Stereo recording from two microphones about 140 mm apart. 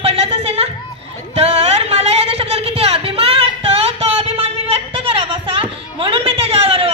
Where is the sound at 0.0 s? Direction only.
45° right (ahead or behind).